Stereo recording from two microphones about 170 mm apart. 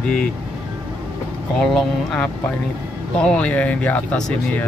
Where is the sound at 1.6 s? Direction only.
Centre (ahead or behind).